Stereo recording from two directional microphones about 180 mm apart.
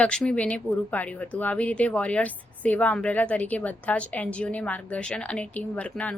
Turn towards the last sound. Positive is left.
turn(degrees=5)  # may be behind; listen again after turning